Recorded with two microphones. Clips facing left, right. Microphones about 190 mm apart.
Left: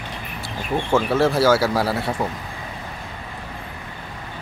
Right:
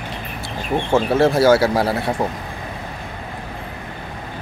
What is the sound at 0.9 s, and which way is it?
Speech, 25° right (ahead or behind).